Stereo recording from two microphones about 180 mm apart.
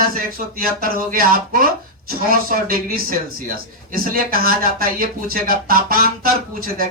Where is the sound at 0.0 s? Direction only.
55° right (ahead or behind).